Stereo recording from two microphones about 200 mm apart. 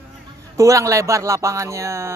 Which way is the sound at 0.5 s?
15° right (ahead or behind).